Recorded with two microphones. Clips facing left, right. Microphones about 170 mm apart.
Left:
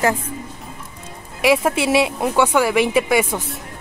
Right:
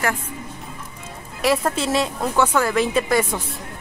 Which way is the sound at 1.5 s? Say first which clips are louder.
Left 4 dB; 10° left (ahead or behind).